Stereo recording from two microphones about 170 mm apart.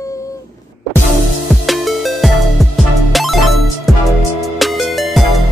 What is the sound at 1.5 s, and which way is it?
Music, centre (ahead or behind).